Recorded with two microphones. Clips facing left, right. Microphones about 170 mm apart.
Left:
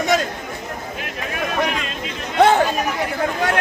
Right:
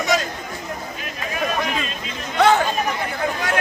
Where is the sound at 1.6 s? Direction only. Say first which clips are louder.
Left 3 dB; 65° left (ahead or behind).